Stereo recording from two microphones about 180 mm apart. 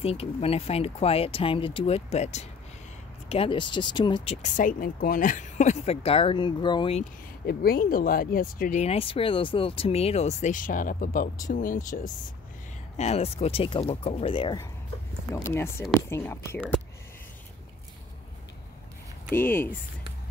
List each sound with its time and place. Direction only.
0.0 s speech: 35° left (ahead or behind)
7.4 s speech: 60° left (ahead or behind)
12.9 s speech: 35° left (ahead or behind)
15.3 s speech: 15° left (ahead or behind)
19.3 s speech: 10° left (ahead or behind)